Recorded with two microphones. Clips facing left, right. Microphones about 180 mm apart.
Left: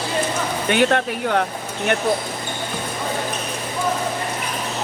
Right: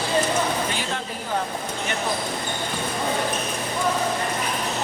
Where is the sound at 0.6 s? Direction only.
70° left (ahead or behind).